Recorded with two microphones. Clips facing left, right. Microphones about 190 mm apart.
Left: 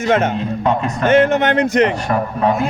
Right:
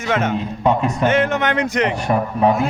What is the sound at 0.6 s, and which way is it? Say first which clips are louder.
Speech: right 1 dB; 10° right (ahead or behind).